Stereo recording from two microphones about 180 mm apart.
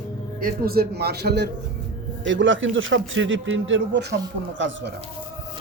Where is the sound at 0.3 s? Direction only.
55° right (ahead or behind).